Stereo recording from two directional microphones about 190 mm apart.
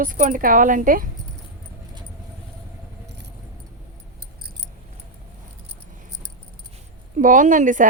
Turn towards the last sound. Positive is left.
turn(degrees=-45)  # may be behind; listen again after turning